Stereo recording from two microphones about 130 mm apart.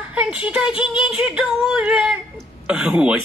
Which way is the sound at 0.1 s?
10° right (ahead or behind).